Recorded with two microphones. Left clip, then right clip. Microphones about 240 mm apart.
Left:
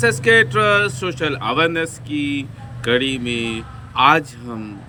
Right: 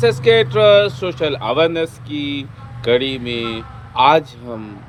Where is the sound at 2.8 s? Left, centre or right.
Centre.